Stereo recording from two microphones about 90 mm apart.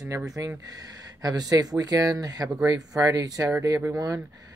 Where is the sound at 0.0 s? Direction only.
40° right (ahead or behind).